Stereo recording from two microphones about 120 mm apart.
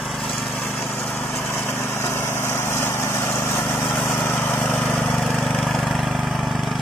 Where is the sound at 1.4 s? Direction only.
15° left (ahead or behind).